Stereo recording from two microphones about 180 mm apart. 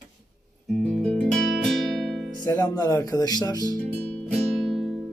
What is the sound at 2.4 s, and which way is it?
Speech, 20° left (ahead or behind).